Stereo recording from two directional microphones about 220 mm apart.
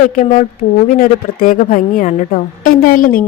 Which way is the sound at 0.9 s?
40° left (ahead or behind).